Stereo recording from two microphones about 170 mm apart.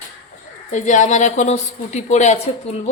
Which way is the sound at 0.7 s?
45° left (ahead or behind).